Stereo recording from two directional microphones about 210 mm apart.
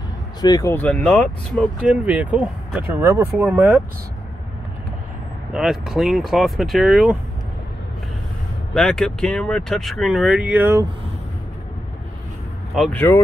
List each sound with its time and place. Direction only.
0.4 s speech: 15° left (ahead or behind)
1.8 s speech: 5° right (ahead or behind)
5.5 s speech: centre (ahead or behind)
8.7 s speech: 5° left (ahead or behind)
12.7 s speech: 5° left (ahead or behind)